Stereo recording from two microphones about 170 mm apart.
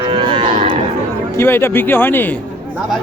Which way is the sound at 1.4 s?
15° left (ahead or behind).